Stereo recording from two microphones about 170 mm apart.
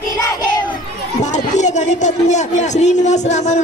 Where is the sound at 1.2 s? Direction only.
45° left (ahead or behind).